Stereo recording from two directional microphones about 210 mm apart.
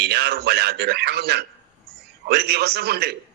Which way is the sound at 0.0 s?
50° right (ahead or behind).